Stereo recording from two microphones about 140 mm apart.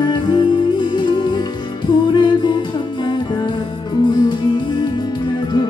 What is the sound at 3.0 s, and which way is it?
Music, 30° left (ahead or behind).